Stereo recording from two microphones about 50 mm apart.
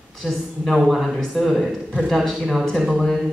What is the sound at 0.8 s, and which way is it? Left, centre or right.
A man's voice, centre.